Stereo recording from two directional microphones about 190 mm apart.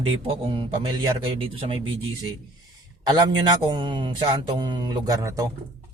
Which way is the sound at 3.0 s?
20° right (ahead or behind).